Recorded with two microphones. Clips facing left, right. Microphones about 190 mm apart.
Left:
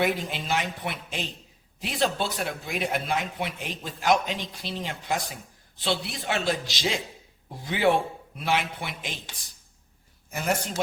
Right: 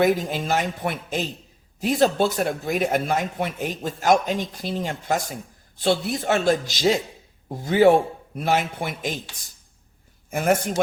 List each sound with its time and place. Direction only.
0.0 s speech: 45° right (ahead or behind)
10.3 s speech: 50° right (ahead or behind)